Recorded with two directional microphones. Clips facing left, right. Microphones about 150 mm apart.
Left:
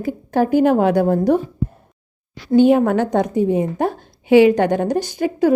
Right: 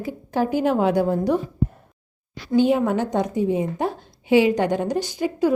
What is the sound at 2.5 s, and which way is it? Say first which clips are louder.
A woman's voice: left 5 dB; 55° left (ahead or behind).